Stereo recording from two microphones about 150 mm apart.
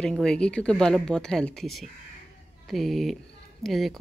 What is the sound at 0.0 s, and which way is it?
A woman's voice, 5° left (ahead or behind).